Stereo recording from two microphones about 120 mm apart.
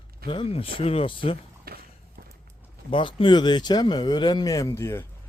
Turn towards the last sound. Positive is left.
turn(degrees=25)  # may be behind; listen again after turning